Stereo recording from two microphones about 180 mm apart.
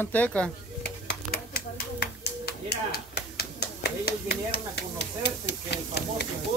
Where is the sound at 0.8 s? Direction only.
60° left (ahead or behind).